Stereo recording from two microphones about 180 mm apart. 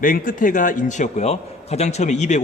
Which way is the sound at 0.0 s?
50° left (ahead or behind).